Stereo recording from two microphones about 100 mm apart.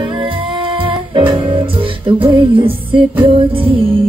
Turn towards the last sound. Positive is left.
turn(degrees=-65)  # may be behind; listen again after turning